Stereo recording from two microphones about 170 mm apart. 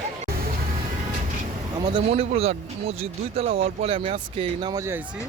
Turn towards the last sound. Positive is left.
turn(degrees=-15)  # may be behind; listen again after turning